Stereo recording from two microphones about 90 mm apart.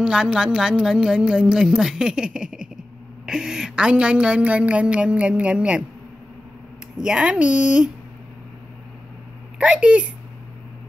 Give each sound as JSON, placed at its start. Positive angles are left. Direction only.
{"t": 0.0, "sound": "speech", "side_deg": -10}
{"t": 7.0, "sound": "speech", "side_deg": -10}
{"t": 9.6, "sound": "speech", "side_deg": -15}